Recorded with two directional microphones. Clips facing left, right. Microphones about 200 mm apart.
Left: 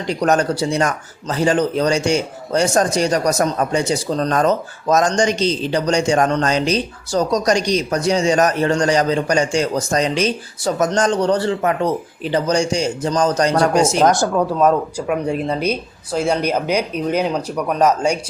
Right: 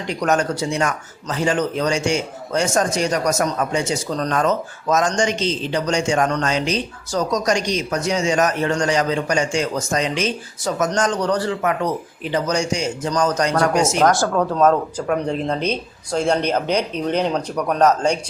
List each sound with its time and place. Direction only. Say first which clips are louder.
0.1 s speech: left 3 dB; 35° left (ahead or behind)
14.1 s speech: left 2 dB; 15° left (ahead or behind)